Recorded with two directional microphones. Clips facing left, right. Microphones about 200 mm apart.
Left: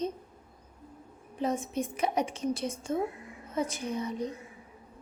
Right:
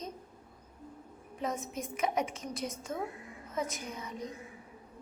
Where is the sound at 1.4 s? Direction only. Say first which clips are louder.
Left 6 dB; 30° left (ahead or behind).